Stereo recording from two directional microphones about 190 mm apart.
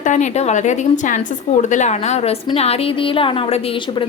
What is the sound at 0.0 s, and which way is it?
A woman's voice, 40° left (ahead or behind).